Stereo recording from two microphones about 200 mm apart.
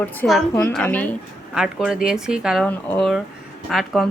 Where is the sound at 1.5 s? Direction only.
5° right (ahead or behind).